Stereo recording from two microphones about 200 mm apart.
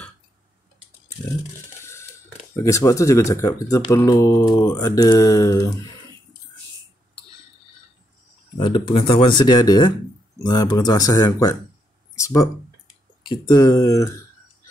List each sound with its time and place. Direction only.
1.8 s a sound: 15° left (ahead or behind)
2.5 s speech: 15° left (ahead or behind)
8.5 s speech: 25° left (ahead or behind)